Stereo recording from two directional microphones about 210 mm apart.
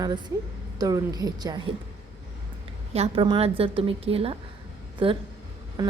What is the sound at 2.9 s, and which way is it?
A woman's voice, 25° right (ahead or behind).